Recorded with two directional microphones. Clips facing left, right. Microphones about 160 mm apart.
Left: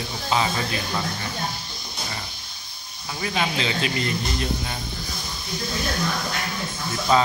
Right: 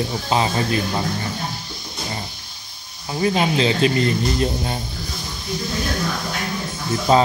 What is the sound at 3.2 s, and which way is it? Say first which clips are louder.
Speech: right 7 dB; 35° right (ahead or behind).